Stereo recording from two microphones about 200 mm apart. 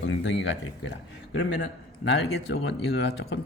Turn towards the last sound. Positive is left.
turn(degrees=55)  # may be behind; listen again after turning